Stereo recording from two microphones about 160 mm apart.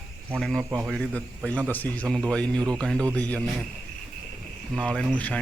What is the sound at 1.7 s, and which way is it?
Insect, 10° left (ahead or behind).